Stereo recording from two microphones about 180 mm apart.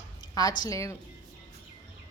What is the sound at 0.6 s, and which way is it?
Speech, 15° left (ahead or behind).